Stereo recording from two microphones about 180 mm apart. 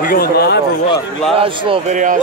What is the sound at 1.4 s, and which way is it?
Speech, 30° right (ahead or behind).